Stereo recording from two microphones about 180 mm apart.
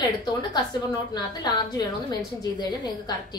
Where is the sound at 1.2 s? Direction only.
25° left (ahead or behind).